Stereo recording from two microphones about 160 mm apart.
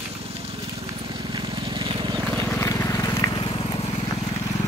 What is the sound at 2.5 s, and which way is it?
Vehicle, 15° left (ahead or behind).